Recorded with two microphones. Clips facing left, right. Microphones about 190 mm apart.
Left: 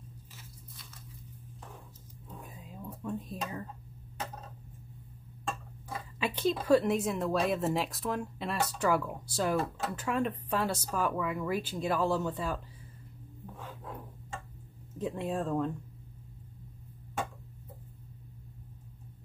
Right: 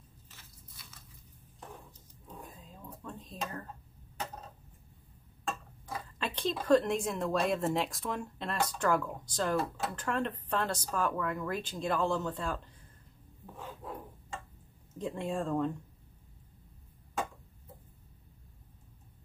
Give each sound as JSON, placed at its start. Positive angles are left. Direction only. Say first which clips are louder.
{"t": 2.2, "sound": "a sound", "louder": "left 1 dB", "side_deg": 10}
{"t": 6.1, "sound": "a woman's voice", "louder": "left 4 dB", "side_deg": 5}
{"t": 15.0, "sound": "a woman's voice", "louder": "left 1 dB", "side_deg": 5}